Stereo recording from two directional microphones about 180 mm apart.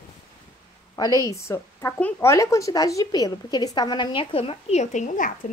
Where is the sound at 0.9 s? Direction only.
20° left (ahead or behind); by 5.3 s 45° left (ahead or behind).